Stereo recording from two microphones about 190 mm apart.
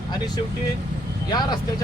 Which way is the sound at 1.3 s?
20° left (ahead or behind).